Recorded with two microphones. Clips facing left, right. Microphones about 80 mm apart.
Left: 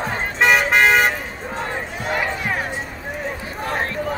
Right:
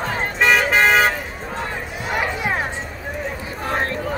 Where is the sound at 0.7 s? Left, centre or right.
Centre.